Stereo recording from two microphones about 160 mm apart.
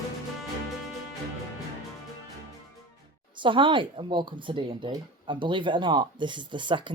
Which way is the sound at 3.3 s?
30° right (ahead or behind).